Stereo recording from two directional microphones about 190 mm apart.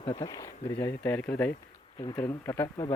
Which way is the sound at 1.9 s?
25° left (ahead or behind).